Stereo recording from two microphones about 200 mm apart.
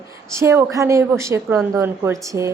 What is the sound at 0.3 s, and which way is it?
A woman's voice, 15° right (ahead or behind).